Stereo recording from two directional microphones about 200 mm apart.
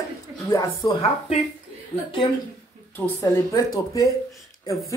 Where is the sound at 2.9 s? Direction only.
10° left (ahead or behind).